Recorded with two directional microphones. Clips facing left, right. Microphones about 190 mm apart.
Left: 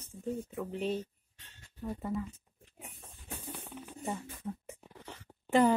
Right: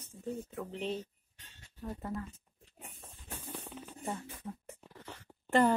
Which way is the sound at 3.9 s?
10° left (ahead or behind).